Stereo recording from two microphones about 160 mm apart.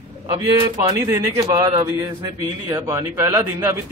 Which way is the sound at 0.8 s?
25° right (ahead or behind).